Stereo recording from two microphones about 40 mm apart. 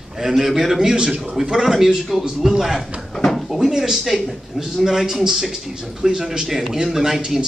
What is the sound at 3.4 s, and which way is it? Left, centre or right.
A man's voice, centre.